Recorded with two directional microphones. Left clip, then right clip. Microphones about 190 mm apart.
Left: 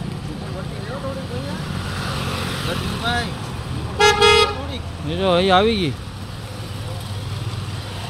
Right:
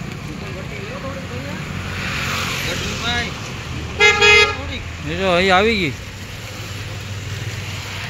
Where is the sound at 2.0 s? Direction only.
45° left (ahead or behind).